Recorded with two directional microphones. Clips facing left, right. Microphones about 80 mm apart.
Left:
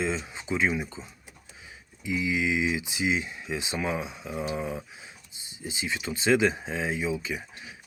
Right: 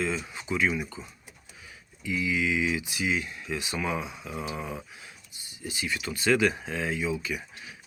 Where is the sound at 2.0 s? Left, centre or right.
Left.